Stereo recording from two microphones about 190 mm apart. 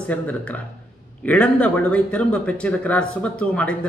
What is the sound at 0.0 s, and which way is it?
A man's voice, 5° left (ahead or behind).